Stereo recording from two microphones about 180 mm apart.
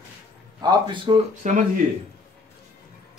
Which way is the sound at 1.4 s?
40° right (ahead or behind).